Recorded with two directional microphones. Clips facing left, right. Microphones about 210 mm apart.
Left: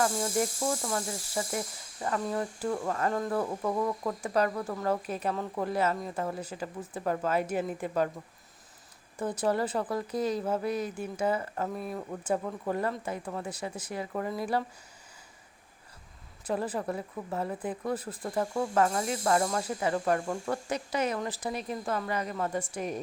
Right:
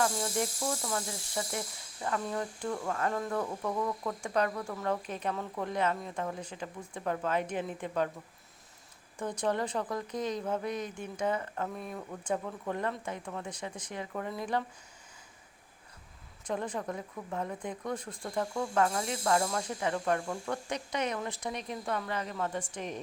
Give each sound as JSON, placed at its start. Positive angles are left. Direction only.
{"t": 0.0, "sound": "speech", "side_deg": 5}
{"t": 3.4, "sound": "a sound", "side_deg": 20}
{"t": 4.2, "sound": "speech", "side_deg": 5}
{"t": 9.1, "sound": "speech", "side_deg": 5}
{"t": 16.5, "sound": "speech", "side_deg": 5}